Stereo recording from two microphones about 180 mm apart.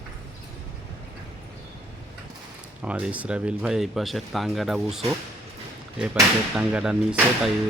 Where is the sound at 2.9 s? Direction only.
5° right (ahead or behind).